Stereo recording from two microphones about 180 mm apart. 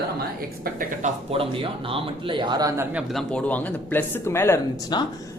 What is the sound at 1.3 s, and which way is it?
Speech, 30° right (ahead or behind).